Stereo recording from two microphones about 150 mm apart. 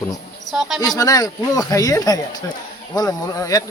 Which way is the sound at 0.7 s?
25° left (ahead or behind).